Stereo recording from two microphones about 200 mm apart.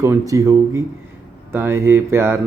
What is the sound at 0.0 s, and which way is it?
Speech, 15° right (ahead or behind).